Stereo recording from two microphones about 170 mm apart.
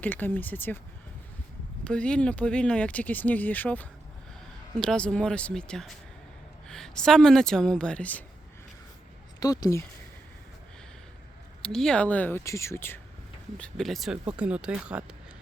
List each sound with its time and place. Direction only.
0.0 s speech: 10° left (ahead or behind)
1.8 s a woman's voice: 5° left (ahead or behind)
9.4 s speech: 20° left (ahead or behind)
11.6 s speech: 5° left (ahead or behind)
13.6 s a woman's voice: centre (ahead or behind)